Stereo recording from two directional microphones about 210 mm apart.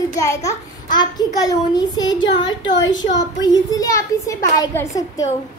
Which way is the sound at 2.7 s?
60° left (ahead or behind).